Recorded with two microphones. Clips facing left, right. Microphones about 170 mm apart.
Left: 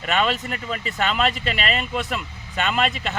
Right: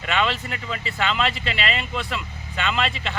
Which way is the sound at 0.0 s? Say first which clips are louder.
Left 2 dB; 45° left (ahead or behind).